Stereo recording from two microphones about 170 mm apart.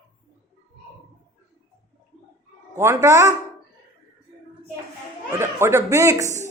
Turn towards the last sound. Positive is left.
turn(degrees=-15)  # may be behind; listen again after turning